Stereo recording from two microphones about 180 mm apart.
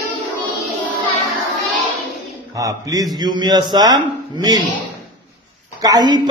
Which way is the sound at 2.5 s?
20° right (ahead or behind).